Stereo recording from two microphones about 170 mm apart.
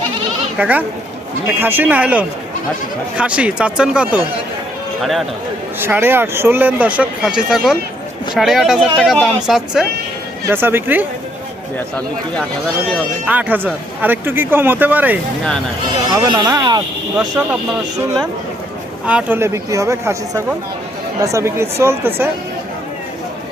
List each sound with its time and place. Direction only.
0.6 s speech: 10° right (ahead or behind)
5.8 s speech: 10° right (ahead or behind)
10.5 s speech: 15° right (ahead or behind)
13.2 s speech: 10° right (ahead or behind)
16.1 s speech: 25° right (ahead or behind)
17.2 s speech: 5° right (ahead or behind)